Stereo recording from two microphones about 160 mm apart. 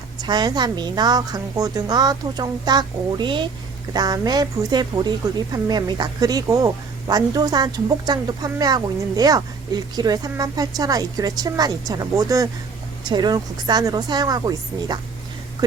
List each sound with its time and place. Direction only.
0.2 s speech: 25° right (ahead or behind)